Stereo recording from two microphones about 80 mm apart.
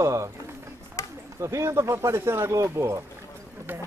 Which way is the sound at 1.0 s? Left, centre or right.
Left.